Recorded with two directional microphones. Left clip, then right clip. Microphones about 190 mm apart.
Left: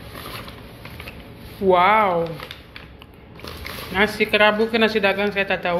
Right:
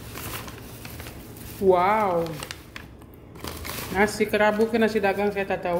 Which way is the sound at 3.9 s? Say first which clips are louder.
Left 4 dB; 15° right (ahead or behind).